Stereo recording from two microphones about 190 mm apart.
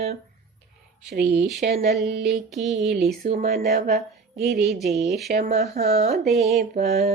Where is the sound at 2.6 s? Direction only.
Centre (ahead or behind).